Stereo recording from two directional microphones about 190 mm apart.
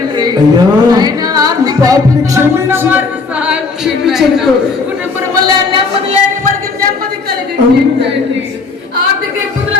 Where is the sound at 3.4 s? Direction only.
5° right (ahead or behind).